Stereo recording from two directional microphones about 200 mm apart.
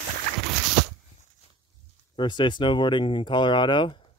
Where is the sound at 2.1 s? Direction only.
25° left (ahead or behind).